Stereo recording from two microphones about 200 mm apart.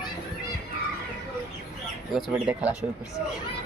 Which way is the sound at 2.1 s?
5° right (ahead or behind).